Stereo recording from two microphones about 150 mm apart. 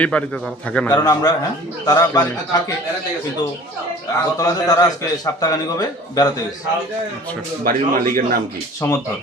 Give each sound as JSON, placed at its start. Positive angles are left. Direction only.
{"t": 0.0, "sound": "a man's voice", "side_deg": 10}
{"t": 0.9, "sound": "a man's voice", "side_deg": 25}
{"t": 4.4, "sound": "a man's voice", "side_deg": 25}
{"t": 7.6, "sound": "a man's voice", "side_deg": -70}
{"t": 8.8, "sound": "a man's voice", "side_deg": 15}